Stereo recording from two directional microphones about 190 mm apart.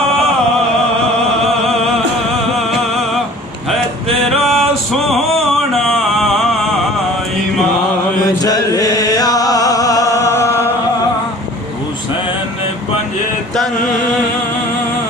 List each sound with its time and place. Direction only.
4.3 s music: centre (ahead or behind)
8.4 s music: 20° left (ahead or behind)